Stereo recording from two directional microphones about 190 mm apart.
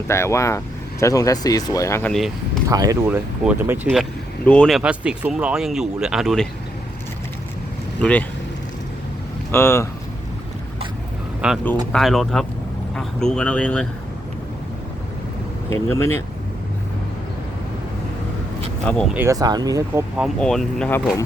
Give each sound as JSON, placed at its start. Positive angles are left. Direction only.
{"t": 0.1, "sound": "speech", "side_deg": 15}
{"t": 2.6, "sound": "speech", "side_deg": -20}
{"t": 3.1, "sound": "speech", "side_deg": -5}
{"t": 4.4, "sound": "speech", "side_deg": 5}
{"t": 9.5, "sound": "speech", "side_deg": 15}
{"t": 11.4, "sound": "speech", "side_deg": -5}
{"t": 15.7, "sound": "speech", "side_deg": 15}
{"t": 19.1, "sound": "speech", "side_deg": -15}